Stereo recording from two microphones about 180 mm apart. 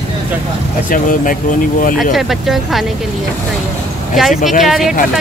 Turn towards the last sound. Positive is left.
turn(degrees=0)  # may be behind; listen again after turning